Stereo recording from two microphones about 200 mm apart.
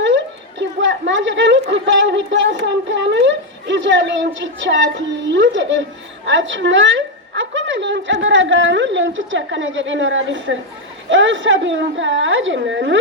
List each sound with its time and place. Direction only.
0.6 s a woman's voice: 65° right (ahead or behind)